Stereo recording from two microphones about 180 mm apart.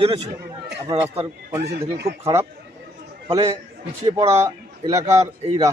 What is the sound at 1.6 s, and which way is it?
Speech, 65° right (ahead or behind).